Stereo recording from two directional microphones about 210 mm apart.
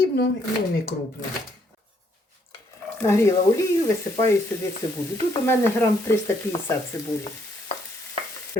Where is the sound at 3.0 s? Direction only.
15° left (ahead or behind).